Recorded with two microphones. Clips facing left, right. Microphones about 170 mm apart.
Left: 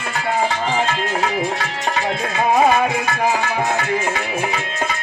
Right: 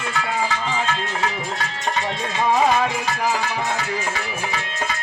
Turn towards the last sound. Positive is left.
turn(degrees=55)  # may be behind; listen again after turning